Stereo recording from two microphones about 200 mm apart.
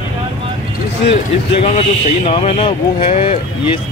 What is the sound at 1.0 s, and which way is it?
A man's voice, 30° left (ahead or behind).